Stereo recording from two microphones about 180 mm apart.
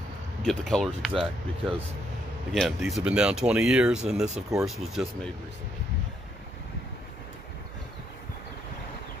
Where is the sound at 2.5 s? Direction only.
Centre (ahead or behind).